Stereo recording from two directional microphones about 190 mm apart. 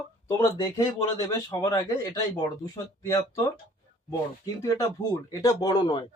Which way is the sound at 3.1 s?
15° left (ahead or behind).